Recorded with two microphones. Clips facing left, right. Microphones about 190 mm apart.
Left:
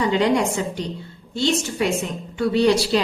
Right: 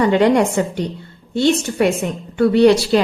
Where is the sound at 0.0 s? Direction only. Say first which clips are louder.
Right 5 dB; 55° right (ahead or behind).